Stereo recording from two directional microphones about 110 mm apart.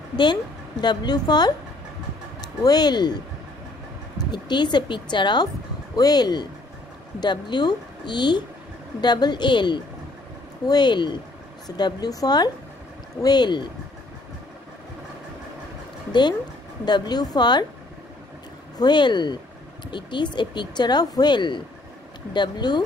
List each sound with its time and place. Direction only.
0.2 s a woman's voice: 40° left (ahead or behind)
2.6 s a woman's voice: 35° left (ahead or behind)
4.3 s a woman's voice: 40° left (ahead or behind)
16.1 s a woman's voice: 45° left (ahead or behind)
18.8 s a woman's voice: 40° left (ahead or behind)